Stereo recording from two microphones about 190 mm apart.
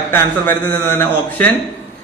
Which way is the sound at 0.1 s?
10° left (ahead or behind).